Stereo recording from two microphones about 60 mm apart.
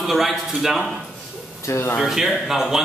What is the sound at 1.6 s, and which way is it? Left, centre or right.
Speech, left.